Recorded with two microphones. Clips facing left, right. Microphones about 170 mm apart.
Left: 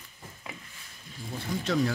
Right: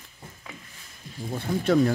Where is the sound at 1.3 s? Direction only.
50° right (ahead or behind).